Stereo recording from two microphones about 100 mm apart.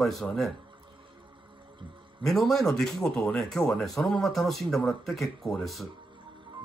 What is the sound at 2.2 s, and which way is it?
Speech, centre (ahead or behind).